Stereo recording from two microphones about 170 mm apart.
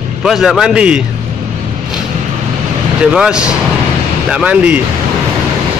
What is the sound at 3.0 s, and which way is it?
Speech, 5° right (ahead or behind).